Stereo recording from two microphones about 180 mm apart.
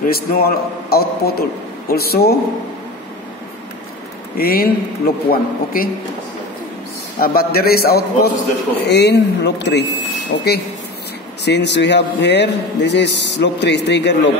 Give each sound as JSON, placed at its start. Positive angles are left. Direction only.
{"t": 0.0, "sound": "a man's voice", "side_deg": 55}
{"t": 4.4, "sound": "a man's voice", "side_deg": 55}
{"t": 7.2, "sound": "a man's voice", "side_deg": 55}
{"t": 8.8, "sound": "a man's voice", "side_deg": 70}
{"t": 11.4, "sound": "a man's voice", "side_deg": 70}